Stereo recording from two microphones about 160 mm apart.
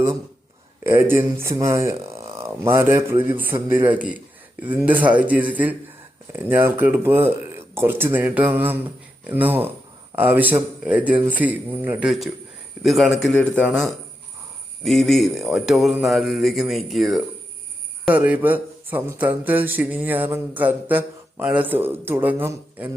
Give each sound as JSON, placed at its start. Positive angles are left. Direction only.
{"t": 0.9, "sound": "speech", "side_deg": -15}